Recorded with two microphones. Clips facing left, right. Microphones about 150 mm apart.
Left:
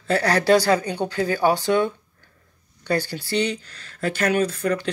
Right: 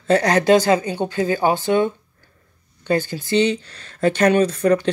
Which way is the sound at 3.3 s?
25° right (ahead or behind).